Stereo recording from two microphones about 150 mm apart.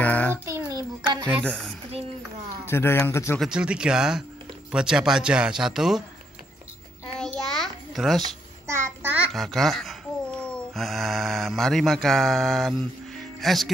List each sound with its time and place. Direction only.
0.0 s child singing: 10° left (ahead or behind)
0.5 s a sound: 20° right (ahead or behind)
1.4 s speech: 5° left (ahead or behind)
2.6 s speech: 15° left (ahead or behind)
3.3 s speech: 5° right (ahead or behind)
7.2 s a sound: centre (ahead or behind)
8.6 s a child's voice: 15° right (ahead or behind)
9.3 s speech: centre (ahead or behind)